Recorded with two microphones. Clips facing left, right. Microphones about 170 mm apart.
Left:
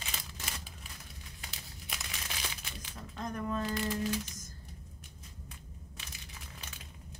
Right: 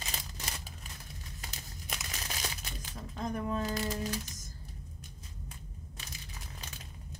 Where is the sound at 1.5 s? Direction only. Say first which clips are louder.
Right 3 dB; 45° right (ahead or behind).